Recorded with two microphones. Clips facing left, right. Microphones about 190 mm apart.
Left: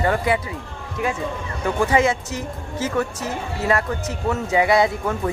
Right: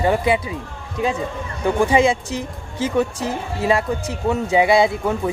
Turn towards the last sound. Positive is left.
turn(degrees=-10)  # may be behind; listen again after turning